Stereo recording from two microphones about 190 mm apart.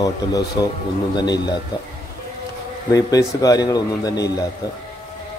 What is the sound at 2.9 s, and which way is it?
A man's voice, 20° left (ahead or behind).